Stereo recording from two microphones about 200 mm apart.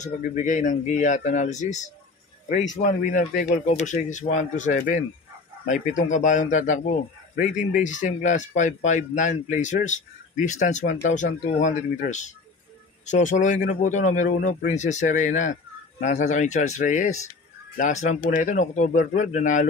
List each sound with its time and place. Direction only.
0.0 s a man's voice: 40° left (ahead or behind)
2.8 s a man's voice: 40° left (ahead or behind)